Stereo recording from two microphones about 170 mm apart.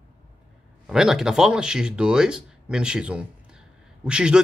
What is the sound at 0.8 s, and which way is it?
A man's voice, centre (ahead or behind).